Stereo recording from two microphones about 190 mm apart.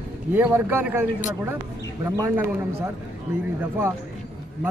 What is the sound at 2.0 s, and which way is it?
Speech, 15° right (ahead or behind).